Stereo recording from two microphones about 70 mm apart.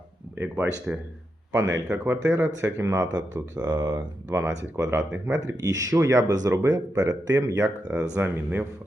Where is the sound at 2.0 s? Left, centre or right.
Right.